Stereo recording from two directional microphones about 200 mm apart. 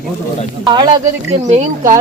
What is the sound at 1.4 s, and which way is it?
Speech, 35° right (ahead or behind).